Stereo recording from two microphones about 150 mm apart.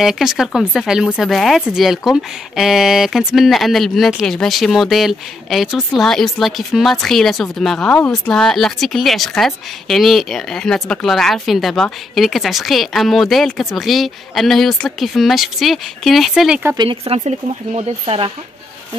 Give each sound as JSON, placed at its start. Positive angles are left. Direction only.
{"t": 0.0, "sound": "speech", "side_deg": -5}
{"t": 16.7, "sound": "speech", "side_deg": -30}